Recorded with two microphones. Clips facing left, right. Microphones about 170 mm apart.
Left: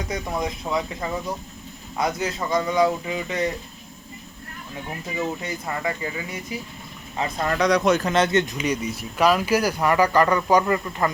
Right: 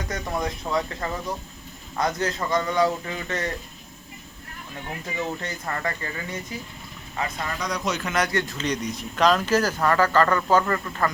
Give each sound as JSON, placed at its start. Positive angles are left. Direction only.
{"t": 0.1, "sound": "speech", "side_deg": 10}
{"t": 5.4, "sound": "speech", "side_deg": 10}
{"t": 7.3, "sound": "speech", "side_deg": 50}
{"t": 7.6, "sound": "speech", "side_deg": 75}
{"t": 8.1, "sound": "speech", "side_deg": 25}